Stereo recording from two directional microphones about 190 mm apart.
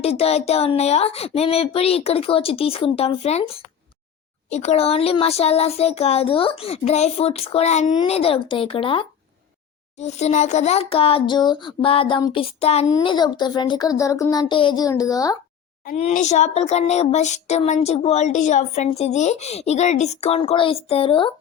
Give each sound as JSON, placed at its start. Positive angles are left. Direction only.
{"t": 0.0, "sound": "a child's voice", "side_deg": 30}
{"t": 15.9, "sound": "speech", "side_deg": 40}